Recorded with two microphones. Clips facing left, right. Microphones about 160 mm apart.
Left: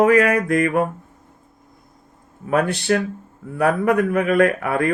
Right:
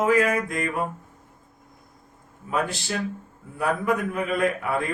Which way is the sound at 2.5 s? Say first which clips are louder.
Left 8 dB; 65° left (ahead or behind).